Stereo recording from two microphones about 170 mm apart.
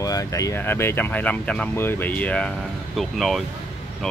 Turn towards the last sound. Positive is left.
turn(degrees=0)  # may be behind; listen again after turning